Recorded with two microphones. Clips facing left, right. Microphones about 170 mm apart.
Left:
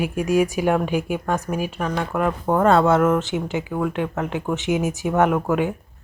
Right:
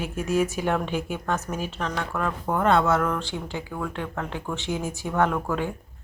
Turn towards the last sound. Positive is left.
turn(degrees=20)  # may be behind; listen again after turning